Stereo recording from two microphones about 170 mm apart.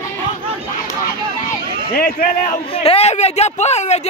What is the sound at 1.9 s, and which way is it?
Speech, 50° left (ahead or behind).